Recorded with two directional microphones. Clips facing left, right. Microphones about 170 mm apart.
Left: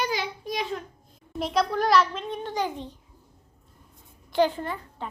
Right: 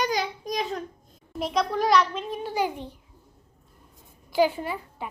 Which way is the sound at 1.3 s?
Centre (ahead or behind).